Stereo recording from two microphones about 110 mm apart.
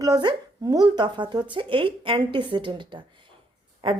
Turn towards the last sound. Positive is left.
turn(degrees=-55)  # may be behind; listen again after turning